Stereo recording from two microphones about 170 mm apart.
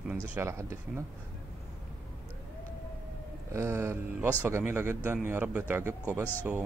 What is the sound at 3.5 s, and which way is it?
Speech, 15° right (ahead or behind).